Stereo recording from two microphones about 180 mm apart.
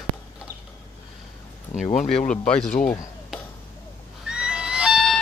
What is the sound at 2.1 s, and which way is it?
Speech, 45° left (ahead or behind).